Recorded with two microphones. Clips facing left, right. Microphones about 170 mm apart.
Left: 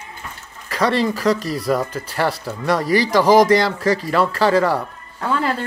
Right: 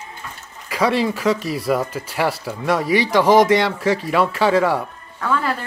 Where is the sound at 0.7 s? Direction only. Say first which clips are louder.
Even; 5° right (ahead or behind).